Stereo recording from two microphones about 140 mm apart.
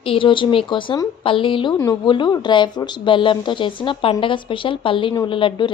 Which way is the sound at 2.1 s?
35° left (ahead or behind).